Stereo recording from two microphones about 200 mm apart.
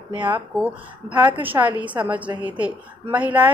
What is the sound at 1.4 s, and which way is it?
A woman's voice, 10° right (ahead or behind).